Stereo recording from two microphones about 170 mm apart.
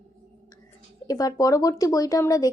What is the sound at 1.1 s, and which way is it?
Speech, 20° left (ahead or behind).